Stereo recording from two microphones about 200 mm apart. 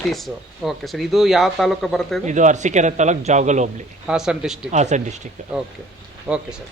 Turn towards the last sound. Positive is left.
turn(degrees=-5)  # may be behind; listen again after turning